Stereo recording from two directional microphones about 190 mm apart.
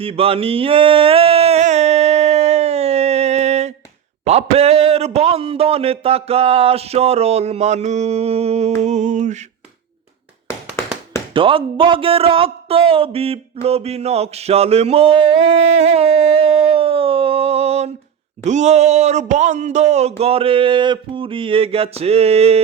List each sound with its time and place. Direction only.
0.0 s a sound: 30° right (ahead or behind)
4.3 s speech: 35° right (ahead or behind)
11.3 s speech: 25° right (ahead or behind)